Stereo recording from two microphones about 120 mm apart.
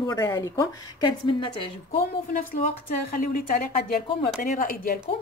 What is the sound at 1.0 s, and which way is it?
Speech, 40° left (ahead or behind).